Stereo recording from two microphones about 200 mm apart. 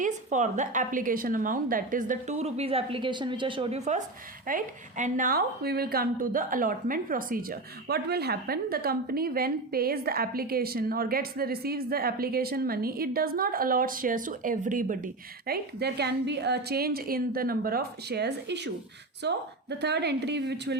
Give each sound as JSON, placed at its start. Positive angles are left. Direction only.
{"t": 0.0, "sound": "a woman's voice", "side_deg": -35}